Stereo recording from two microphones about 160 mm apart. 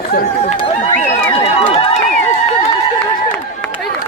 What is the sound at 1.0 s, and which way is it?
Run, 35° left (ahead or behind).